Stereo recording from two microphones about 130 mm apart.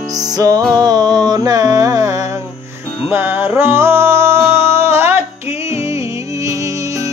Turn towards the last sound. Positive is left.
turn(degrees=-25)  # may be behind; listen again after turning